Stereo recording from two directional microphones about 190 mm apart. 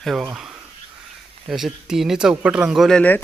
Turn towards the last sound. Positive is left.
turn(degrees=5)  # may be behind; listen again after turning